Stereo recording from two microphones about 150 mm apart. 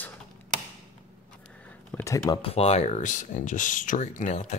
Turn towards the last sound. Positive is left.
turn(degrees=50)  # may be behind; listen again after turning